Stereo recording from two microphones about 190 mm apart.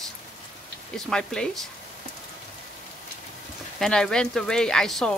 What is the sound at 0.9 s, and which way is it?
Speech, 5° left (ahead or behind).